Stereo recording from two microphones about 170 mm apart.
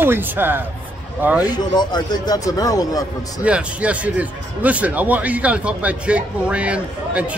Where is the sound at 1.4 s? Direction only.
25° left (ahead or behind).